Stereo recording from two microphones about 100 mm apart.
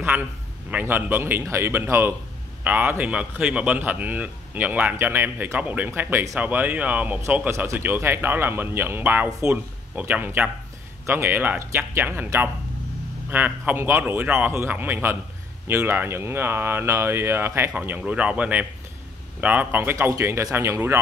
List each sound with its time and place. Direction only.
0.0 s speech: 20° right (ahead or behind)